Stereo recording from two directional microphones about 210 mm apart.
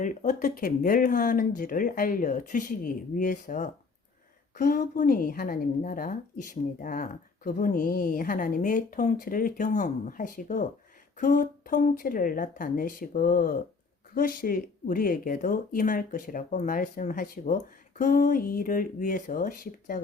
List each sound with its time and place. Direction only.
0.0 s a woman's voice: 35° left (ahead or behind)